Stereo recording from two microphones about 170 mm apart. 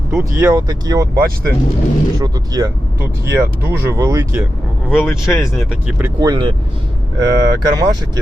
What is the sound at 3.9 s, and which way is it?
Speech, 20° right (ahead or behind).